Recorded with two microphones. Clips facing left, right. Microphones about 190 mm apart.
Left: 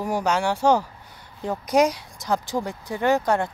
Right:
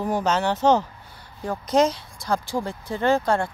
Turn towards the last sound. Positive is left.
turn(degrees=15)  # may be behind; listen again after turning